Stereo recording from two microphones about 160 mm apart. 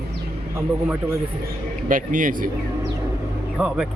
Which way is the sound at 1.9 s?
60° right (ahead or behind).